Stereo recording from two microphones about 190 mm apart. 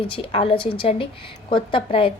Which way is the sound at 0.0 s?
30° left (ahead or behind).